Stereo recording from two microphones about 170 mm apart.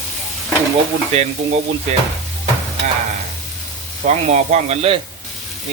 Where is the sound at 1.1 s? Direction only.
40° right (ahead or behind).